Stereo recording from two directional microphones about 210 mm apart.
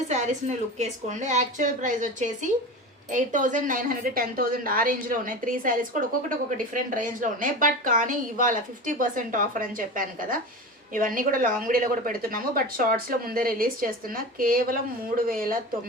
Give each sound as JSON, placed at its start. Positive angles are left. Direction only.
{"t": 0.1, "sound": "a woman's voice", "side_deg": -35}